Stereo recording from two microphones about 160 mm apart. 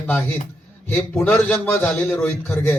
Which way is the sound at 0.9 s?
15° left (ahead or behind).